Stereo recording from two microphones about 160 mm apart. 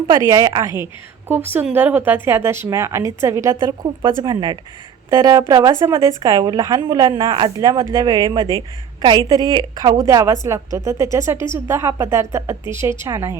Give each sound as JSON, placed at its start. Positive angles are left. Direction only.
{"t": 0.3, "sound": "a woman's voice", "side_deg": -20}
{"t": 1.3, "sound": "a woman's voice", "side_deg": -10}
{"t": 3.8, "sound": "a woman's voice", "side_deg": -30}